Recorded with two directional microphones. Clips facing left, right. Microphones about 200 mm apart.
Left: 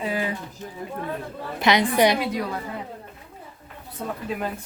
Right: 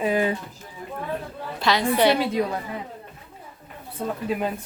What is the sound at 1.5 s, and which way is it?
Speech, 20° left (ahead or behind).